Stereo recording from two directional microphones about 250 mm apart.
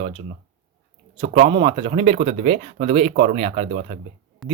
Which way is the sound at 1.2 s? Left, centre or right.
Right.